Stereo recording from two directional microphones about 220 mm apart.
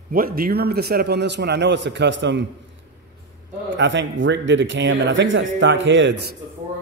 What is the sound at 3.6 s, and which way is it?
Speech, 55° right (ahead or behind).